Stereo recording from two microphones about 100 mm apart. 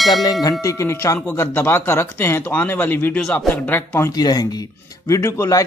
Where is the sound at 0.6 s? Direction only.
30° left (ahead or behind).